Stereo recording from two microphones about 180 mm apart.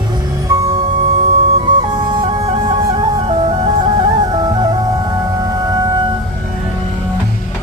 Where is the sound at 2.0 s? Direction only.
30° right (ahead or behind).